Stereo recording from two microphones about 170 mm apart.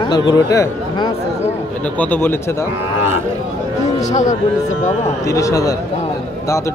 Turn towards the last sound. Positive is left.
turn(degrees=20)  # may be behind; listen again after turning